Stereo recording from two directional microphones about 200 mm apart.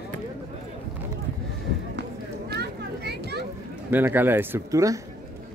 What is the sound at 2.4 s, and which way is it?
Children playing, 55° right (ahead or behind).